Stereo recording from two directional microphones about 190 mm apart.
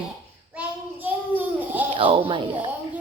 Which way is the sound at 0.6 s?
10° right (ahead or behind).